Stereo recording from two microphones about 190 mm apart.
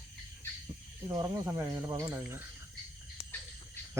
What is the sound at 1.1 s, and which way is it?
Speech, 20° right (ahead or behind).